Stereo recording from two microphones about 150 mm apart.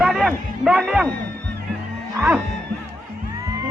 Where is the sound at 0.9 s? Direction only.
5° left (ahead or behind).